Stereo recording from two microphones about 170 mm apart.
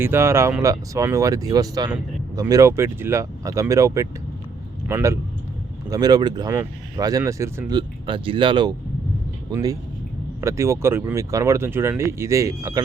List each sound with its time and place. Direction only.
0.0 s speech: 15° right (ahead or behind)
7.7 s speech: 30° right (ahead or behind)